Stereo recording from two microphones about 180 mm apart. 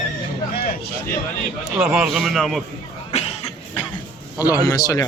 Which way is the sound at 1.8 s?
5° right (ahead or behind).